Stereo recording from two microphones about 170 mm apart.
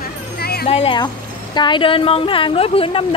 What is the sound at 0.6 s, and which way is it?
A woman's voice, 35° left (ahead or behind).